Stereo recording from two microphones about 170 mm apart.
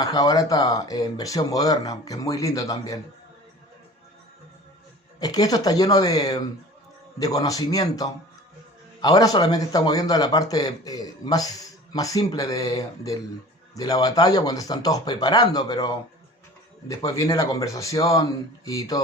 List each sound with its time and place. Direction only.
0.0 s a man's voice: 20° left (ahead or behind)
5.2 s a man's voice: 20° left (ahead or behind)
16.9 s a man's voice: 20° left (ahead or behind)